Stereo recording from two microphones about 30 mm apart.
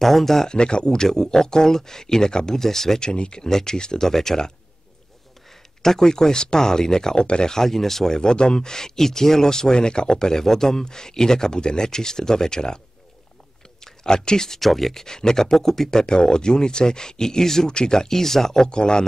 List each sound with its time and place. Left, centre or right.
0.0 s speech: centre
0.5 s speech: left
1.0 s speech: centre
3.0 s speech: left
3.4 s speech: centre
5.8 s speech: centre
7.2 s speech: left
7.4 s speech: centre
8.1 s speech: left
14.0 s speech: left
14.6 s speech: centre
15.0 s speech: left
16.0 s speech: left
18.7 s speech: left